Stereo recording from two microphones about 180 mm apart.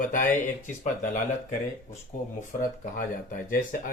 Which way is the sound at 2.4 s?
45° left (ahead or behind).